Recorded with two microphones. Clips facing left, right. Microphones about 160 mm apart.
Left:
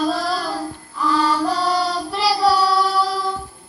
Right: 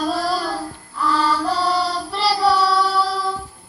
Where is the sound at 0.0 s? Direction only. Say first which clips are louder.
Even; 5° right (ahead or behind).